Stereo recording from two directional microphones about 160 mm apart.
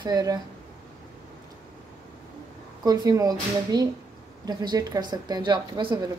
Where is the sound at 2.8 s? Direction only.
25° right (ahead or behind).